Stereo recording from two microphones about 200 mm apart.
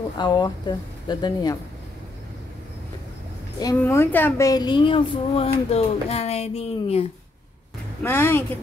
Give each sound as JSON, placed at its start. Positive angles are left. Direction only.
{"t": 0.2, "sound": "speech", "side_deg": 20}
{"t": 3.5, "sound": "speech", "side_deg": 15}
{"t": 8.0, "sound": "speech", "side_deg": 10}